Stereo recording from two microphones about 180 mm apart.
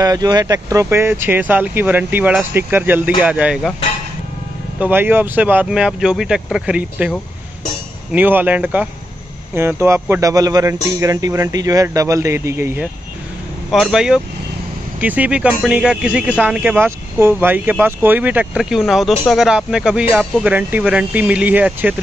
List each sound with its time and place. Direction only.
0.0 s speech: 20° right (ahead or behind); by 3.7 s 5° right (ahead or behind)
4.7 s speech: 10° right (ahead or behind)
13.7 s speech: centre (ahead or behind)